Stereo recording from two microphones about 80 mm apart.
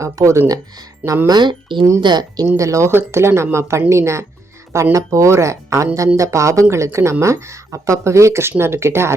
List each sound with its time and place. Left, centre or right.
0.0 s speech: right
1.3 s speech: right
2.0 s speech: right
2.6 s speech: right